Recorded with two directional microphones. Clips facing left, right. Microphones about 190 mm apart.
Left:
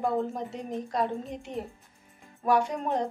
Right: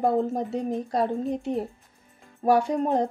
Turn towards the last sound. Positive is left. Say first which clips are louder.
# right 5 dB
turn(degrees=-35)  # may be behind; listen again after turning